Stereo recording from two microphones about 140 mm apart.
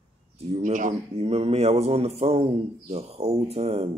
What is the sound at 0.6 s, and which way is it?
Speech, 70° right (ahead or behind).